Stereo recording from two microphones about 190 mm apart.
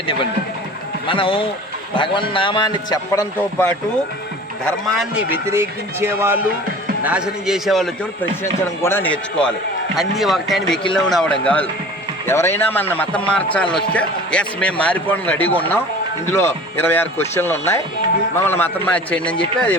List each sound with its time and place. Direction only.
1.0 s a man's voice: 30° left (ahead or behind)
4.9 s a man's voice: 10° right (ahead or behind)
8.8 s a man's voice: 10° left (ahead or behind)